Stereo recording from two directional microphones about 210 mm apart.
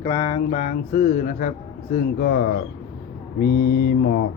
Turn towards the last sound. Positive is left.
turn(degrees=45)  # may be behind; listen again after turning